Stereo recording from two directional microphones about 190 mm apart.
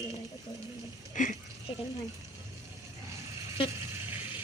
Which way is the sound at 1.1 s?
40° left (ahead or behind).